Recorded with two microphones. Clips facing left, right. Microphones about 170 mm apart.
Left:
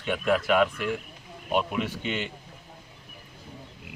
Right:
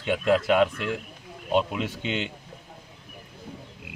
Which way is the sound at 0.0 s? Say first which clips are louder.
Right 3 dB; 25° right (ahead or behind).